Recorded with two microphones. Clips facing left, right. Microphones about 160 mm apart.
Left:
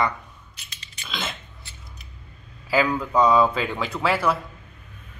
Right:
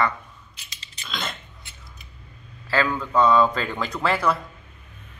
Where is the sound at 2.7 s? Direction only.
10° left (ahead or behind).